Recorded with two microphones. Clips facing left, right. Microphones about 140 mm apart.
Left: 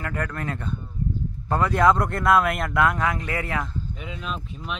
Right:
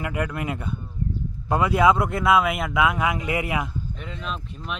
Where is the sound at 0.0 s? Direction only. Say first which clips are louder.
Right 2 dB; 10° right (ahead or behind).